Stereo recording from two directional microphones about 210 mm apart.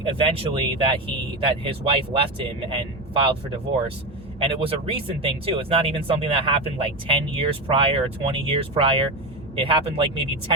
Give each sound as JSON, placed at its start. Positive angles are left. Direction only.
{"t": 0.0, "sound": "speech", "side_deg": -25}
{"t": 4.4, "sound": "speech", "side_deg": -25}